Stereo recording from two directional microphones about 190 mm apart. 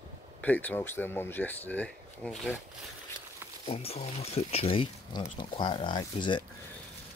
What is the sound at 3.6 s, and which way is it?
Speech, 30° left (ahead or behind).